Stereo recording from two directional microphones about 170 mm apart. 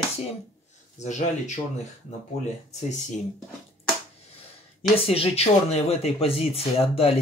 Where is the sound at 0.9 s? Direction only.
45° left (ahead or behind).